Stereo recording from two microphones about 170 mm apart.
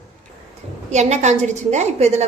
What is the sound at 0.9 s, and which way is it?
Speech, 40° right (ahead or behind).